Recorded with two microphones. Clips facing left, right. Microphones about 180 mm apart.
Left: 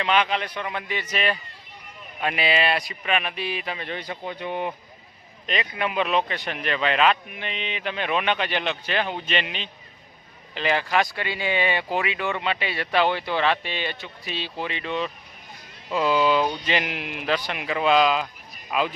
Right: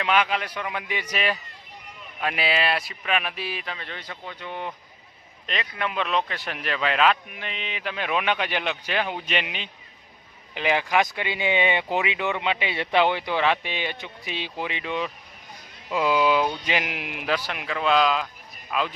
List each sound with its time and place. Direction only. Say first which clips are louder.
0.0 s speech: left 1 dB; 5° right (ahead or behind)
3.7 s speech: left 5 dB; 15° left (ahead or behind)
5.5 s speech: left 3 dB; 5° left (ahead or behind)